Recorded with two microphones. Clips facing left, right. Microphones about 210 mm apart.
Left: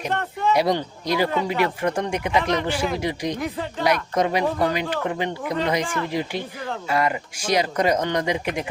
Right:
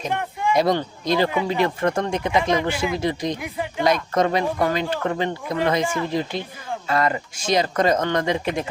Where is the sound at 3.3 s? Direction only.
15° right (ahead or behind).